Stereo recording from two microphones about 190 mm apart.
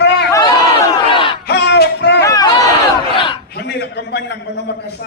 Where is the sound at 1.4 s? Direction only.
60° left (ahead or behind).